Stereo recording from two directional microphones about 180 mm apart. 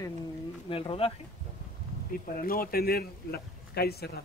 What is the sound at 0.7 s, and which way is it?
Speech, 30° left (ahead or behind).